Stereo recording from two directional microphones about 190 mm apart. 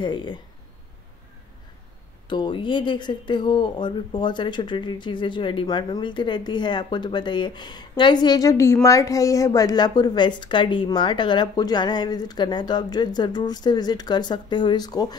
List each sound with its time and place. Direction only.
0.0 s speech: 25° left (ahead or behind)
2.2 s speech: 25° left (ahead or behind)